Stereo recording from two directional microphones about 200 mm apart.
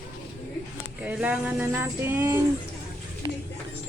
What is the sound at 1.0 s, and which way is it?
Speech, 10° right (ahead or behind).